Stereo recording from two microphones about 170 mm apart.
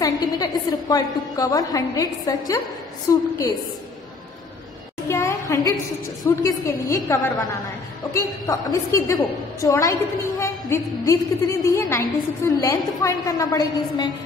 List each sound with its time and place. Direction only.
0.0 s a woman's voice: 20° left (ahead or behind)
5.0 s a woman's voice: 15° left (ahead or behind)